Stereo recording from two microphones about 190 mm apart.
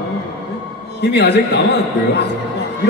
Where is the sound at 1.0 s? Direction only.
60° left (ahead or behind).